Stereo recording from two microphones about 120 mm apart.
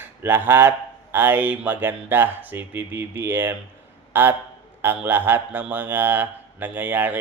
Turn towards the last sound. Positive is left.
turn(degrees=-15)  # may be behind; listen again after turning